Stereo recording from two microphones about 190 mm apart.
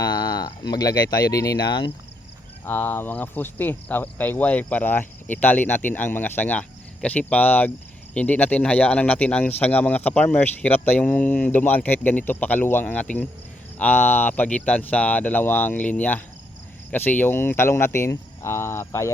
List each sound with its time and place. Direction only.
0.0 s speech: 20° left (ahead or behind)
2.6 s cricket: 10° left (ahead or behind)